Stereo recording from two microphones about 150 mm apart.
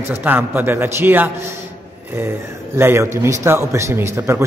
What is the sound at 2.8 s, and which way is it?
A man's voice, 20° right (ahead or behind).